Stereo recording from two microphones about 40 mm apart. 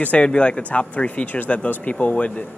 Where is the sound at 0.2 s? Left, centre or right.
Left.